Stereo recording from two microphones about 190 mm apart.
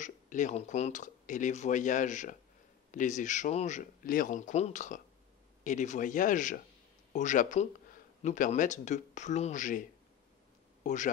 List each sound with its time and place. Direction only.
0.0 s a man's voice: 40° left (ahead or behind)